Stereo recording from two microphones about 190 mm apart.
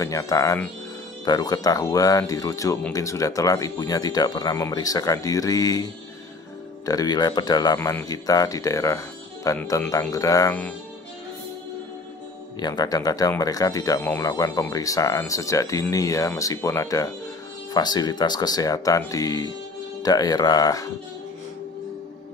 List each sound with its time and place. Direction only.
0.0 s speech: 15° left (ahead or behind)
6.9 s speech: 20° left (ahead or behind)
12.5 s speech: 20° left (ahead or behind)